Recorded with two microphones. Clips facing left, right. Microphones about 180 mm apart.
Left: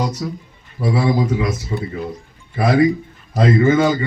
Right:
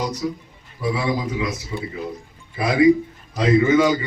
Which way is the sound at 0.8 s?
40° left (ahead or behind).